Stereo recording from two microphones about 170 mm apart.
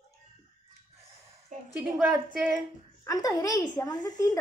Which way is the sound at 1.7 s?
5° right (ahead or behind).